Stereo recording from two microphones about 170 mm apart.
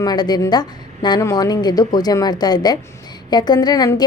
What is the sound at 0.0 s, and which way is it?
A woman's voice, 25° left (ahead or behind).